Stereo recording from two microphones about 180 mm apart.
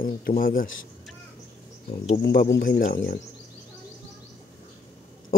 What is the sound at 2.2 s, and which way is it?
Speech, 60° left (ahead or behind).